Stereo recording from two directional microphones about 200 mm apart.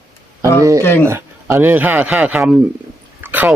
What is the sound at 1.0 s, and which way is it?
A man's voice, 10° right (ahead or behind).